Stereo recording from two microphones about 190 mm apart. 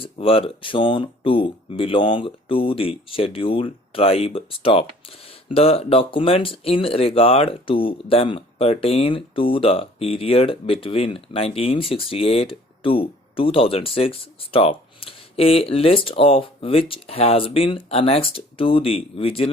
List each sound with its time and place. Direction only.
0.0 s speech: 30° left (ahead or behind)